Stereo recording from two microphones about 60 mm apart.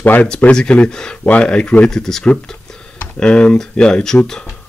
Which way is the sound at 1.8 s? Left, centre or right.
Centre.